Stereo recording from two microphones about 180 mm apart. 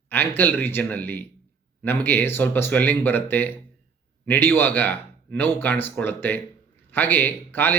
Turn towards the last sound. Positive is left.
turn(degrees=10)  # may be behind; listen again after turning